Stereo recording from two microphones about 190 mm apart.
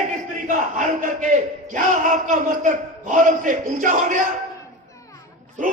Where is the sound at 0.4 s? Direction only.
40° right (ahead or behind).